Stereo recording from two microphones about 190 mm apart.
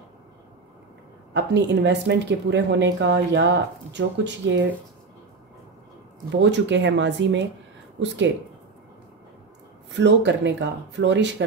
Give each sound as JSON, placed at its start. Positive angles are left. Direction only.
{"t": 1.3, "sound": "speech", "side_deg": -65}
{"t": 6.3, "sound": "speech", "side_deg": -70}
{"t": 9.8, "sound": "speech", "side_deg": -65}